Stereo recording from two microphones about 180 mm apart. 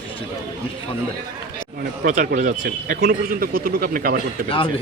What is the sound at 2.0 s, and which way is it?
A man's voice, 45° right (ahead or behind).